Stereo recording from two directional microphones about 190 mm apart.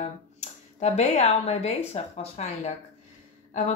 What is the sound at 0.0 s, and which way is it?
Speech, 35° left (ahead or behind).